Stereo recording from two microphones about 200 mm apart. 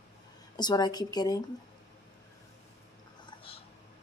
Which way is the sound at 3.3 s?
25° left (ahead or behind).